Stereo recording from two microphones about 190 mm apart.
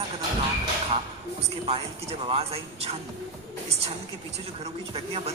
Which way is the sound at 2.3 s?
30° right (ahead or behind).